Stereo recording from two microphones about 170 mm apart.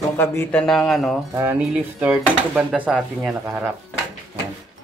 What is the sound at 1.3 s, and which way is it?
Speech, 10° right (ahead or behind).